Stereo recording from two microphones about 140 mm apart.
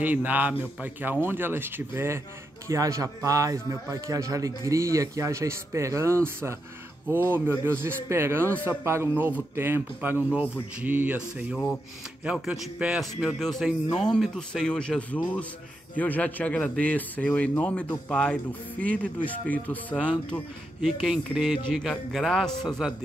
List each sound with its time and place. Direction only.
0.0 s a man's voice: 10° right (ahead or behind); by 20.4 s 10° left (ahead or behind)
21.0 s a man's voice: 5° right (ahead or behind)